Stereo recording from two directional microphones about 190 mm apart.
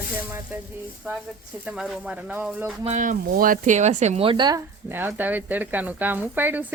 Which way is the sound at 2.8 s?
40° right (ahead or behind).